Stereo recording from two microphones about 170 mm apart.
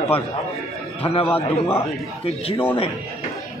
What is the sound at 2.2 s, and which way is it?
Speech, 35° left (ahead or behind).